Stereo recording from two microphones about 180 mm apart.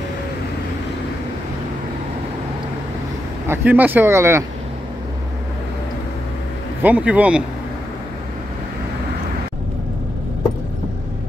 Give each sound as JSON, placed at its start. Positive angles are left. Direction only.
{"t": 3.4, "sound": "speech", "side_deg": -10}
{"t": 6.8, "sound": "speech", "side_deg": -10}